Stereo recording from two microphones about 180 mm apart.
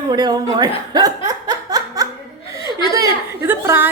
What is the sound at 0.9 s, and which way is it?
Laughter, 20° right (ahead or behind).